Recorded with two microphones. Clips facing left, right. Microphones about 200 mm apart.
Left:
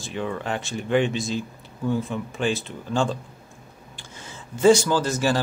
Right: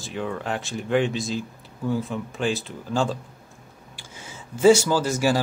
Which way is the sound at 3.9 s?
10° right (ahead or behind).